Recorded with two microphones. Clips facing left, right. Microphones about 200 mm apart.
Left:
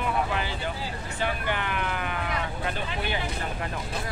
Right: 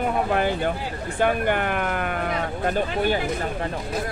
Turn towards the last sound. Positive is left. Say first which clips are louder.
# right 9 dB
turn(degrees=-45)  # may be behind; listen again after turning